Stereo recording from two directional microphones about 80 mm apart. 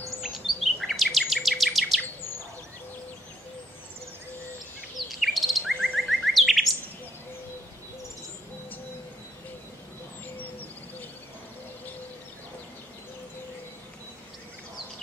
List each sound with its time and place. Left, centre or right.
0.2 s bird vocalization: centre
4.9 s bird: centre
10.3 s bird: left